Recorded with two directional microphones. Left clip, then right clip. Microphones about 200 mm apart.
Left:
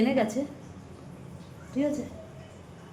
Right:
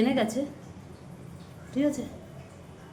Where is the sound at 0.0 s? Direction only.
Centre (ahead or behind).